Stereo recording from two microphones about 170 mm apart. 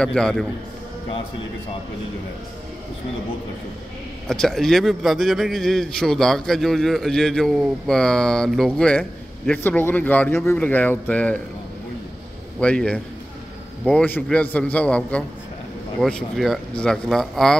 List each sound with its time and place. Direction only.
0.0 s a man's voice: 5° left (ahead or behind)
4.3 s a man's voice: centre (ahead or behind)
12.5 s a man's voice: 5° left (ahead or behind)